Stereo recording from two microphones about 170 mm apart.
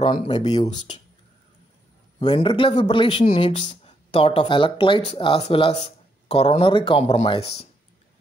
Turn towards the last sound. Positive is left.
turn(degrees=35)  # may be behind; listen again after turning